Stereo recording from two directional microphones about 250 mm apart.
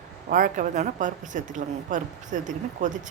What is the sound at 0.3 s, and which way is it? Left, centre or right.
A woman's voice, right.